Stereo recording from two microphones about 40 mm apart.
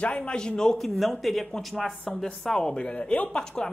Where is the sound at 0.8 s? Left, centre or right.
Centre.